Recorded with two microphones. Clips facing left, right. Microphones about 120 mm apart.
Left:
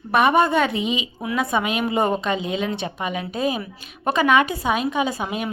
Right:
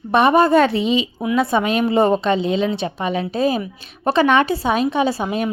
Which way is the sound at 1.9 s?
30° right (ahead or behind).